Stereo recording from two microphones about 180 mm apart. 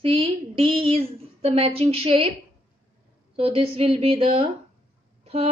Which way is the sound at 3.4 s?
30° right (ahead or behind).